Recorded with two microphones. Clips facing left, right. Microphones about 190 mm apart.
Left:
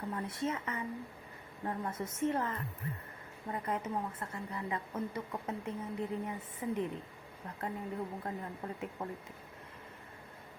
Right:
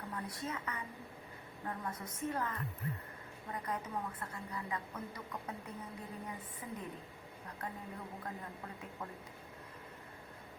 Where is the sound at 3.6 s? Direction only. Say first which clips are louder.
Left 4 dB; 25° left (ahead or behind).